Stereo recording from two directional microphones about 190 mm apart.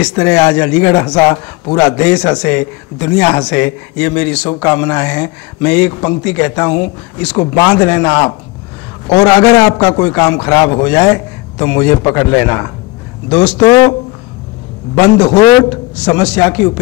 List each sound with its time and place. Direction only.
0.1 s a man's voice: 15° left (ahead or behind)
15.0 s a man's voice: 15° left (ahead or behind)
16.2 s a man's voice: 10° left (ahead or behind)